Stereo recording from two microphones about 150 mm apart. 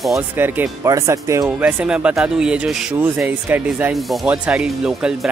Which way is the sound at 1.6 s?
10° right (ahead or behind).